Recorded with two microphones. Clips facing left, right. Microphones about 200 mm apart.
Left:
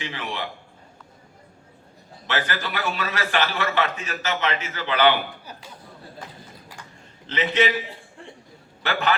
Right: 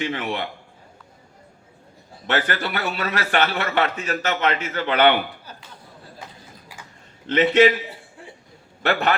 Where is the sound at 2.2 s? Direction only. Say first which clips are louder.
Right 4 dB; 55° right (ahead or behind).